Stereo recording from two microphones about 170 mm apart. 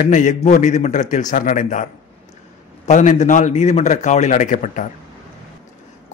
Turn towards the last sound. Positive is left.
turn(degrees=45)  # may be behind; listen again after turning